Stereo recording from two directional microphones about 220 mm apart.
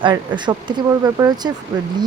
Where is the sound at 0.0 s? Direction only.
20° right (ahead or behind).